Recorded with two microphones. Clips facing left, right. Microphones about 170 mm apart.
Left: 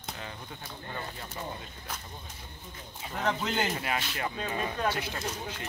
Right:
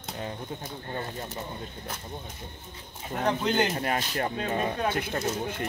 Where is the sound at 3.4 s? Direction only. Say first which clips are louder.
Right 5 dB; 5° left (ahead or behind).